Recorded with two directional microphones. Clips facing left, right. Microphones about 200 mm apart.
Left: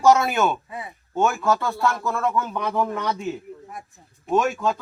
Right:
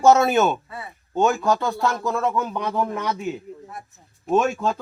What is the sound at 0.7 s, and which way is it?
Speech, 15° left (ahead or behind).